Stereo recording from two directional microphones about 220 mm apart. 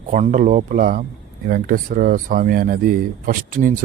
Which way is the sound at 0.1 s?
35° right (ahead or behind).